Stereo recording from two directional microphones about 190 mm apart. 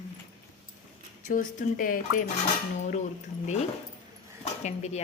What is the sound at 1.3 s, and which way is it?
Speech, 45° left (ahead or behind).